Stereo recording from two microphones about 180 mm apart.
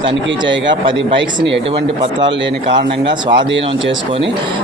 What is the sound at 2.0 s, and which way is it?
Speech, 25° right (ahead or behind).